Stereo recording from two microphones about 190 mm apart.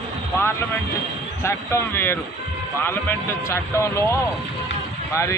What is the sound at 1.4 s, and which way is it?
Speech, 15° left (ahead or behind).